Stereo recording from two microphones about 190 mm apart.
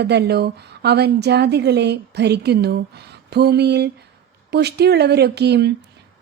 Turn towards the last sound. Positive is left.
turn(degrees=-60)  # may be behind; listen again after turning